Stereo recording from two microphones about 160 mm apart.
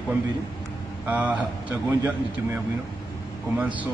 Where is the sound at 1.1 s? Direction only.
10° right (ahead or behind).